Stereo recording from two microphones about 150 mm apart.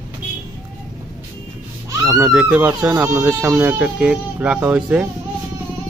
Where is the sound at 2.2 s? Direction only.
10° right (ahead or behind).